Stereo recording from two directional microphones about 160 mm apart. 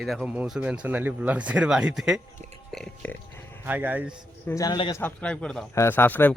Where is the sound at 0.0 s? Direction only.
5° right (ahead or behind).